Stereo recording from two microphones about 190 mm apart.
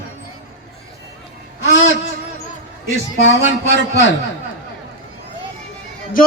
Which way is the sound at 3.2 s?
70° left (ahead or behind).